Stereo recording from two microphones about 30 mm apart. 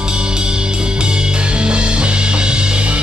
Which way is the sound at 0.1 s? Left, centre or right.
Right.